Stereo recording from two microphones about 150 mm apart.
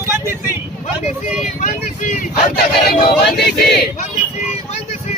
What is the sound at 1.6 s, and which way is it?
Vehicle, 60° left (ahead or behind).